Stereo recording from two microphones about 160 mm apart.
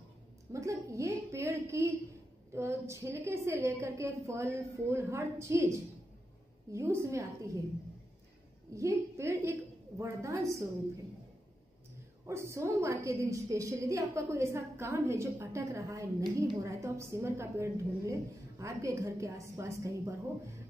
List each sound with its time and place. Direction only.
0.5 s a woman's voice: 20° right (ahead or behind)
8.7 s a woman's voice: 20° right (ahead or behind)
12.3 s a woman's voice: 15° right (ahead or behind)